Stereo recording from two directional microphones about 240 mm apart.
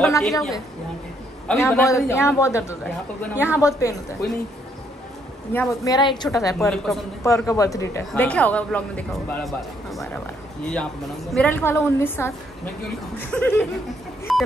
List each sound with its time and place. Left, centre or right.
0.1 s a man's voice: centre
5.5 s a man's voice: centre
7.2 s a man's voice: centre
14.3 s a sound: centre